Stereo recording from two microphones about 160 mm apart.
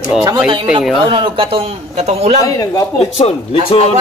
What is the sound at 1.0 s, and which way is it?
A man's voice, 35° right (ahead or behind).